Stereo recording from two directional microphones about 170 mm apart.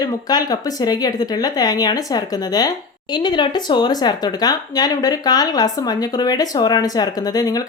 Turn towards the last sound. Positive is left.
turn(degrees=20)  # may be behind; listen again after turning